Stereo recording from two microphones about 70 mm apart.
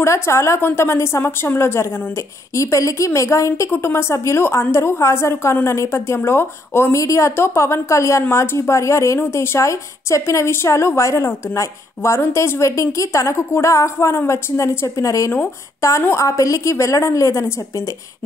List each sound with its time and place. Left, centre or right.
0.0 s a woman's voice: left
2.5 s a woman's voice: left
3.7 s a woman's voice: left
7.0 s a woman's voice: left